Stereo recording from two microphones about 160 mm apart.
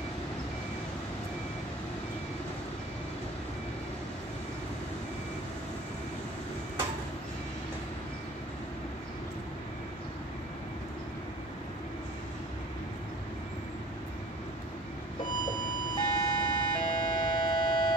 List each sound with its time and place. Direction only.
16.0 s siren: 25° left (ahead or behind)